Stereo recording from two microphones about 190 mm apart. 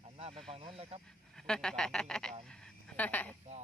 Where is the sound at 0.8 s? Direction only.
30° right (ahead or behind).